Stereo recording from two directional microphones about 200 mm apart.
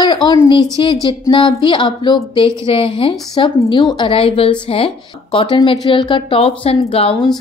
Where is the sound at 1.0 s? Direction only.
25° left (ahead or behind).